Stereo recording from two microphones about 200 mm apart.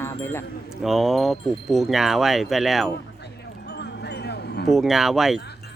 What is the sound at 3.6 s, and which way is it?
Music, 55° left (ahead or behind).